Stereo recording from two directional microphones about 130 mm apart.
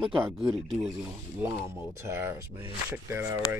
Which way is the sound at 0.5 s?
Centre (ahead or behind).